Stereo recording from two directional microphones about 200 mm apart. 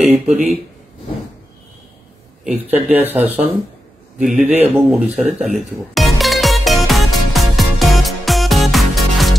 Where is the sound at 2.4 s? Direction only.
10° right (ahead or behind).